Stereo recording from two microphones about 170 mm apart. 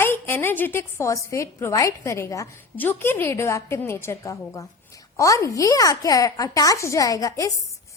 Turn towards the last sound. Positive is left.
turn(degrees=20)  # may be behind; listen again after turning